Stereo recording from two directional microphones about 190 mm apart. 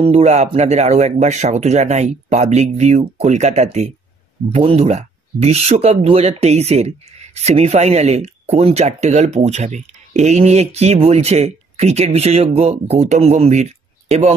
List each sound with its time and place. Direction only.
0.0 s speech: 35° right (ahead or behind)